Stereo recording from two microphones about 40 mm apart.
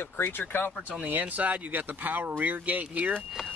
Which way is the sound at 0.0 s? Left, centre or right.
Left.